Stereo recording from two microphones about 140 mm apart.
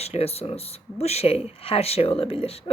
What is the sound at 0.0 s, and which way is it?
Speech, 45° left (ahead or behind).